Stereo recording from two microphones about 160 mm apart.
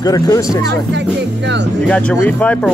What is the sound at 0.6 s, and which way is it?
Speech, 90° right.